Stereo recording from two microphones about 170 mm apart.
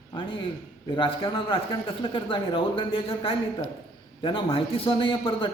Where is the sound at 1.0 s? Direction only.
30° left (ahead or behind).